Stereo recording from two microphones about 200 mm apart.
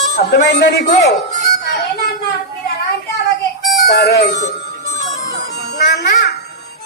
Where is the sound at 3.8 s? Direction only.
55° left (ahead or behind).